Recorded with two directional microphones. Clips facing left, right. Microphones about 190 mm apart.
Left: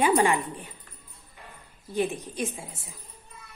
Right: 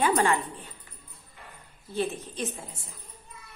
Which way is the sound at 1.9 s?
15° left (ahead or behind).